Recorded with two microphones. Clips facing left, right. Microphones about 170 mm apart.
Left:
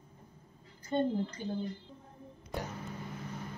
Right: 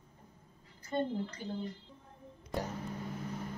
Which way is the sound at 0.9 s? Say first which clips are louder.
Left 3 dB; 25° left (ahead or behind).